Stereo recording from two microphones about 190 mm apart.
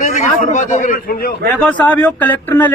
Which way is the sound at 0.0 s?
40° left (ahead or behind).